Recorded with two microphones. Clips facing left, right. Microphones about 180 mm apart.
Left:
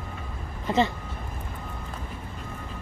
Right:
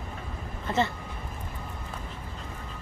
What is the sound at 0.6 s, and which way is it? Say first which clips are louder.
Speech: left 4 dB; 20° left (ahead or behind).